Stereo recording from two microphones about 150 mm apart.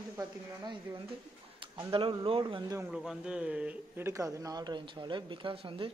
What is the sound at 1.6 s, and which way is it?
A man's voice, 35° right (ahead or behind).